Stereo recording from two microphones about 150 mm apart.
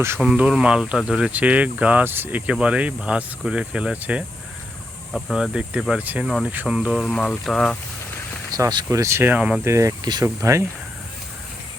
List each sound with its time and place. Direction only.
0.2 s speech: 5° right (ahead or behind)
8.5 s speech: 20° right (ahead or behind)
9.6 s speech: 20° right (ahead or behind)